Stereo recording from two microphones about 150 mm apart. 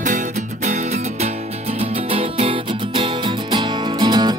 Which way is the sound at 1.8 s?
40° right (ahead or behind).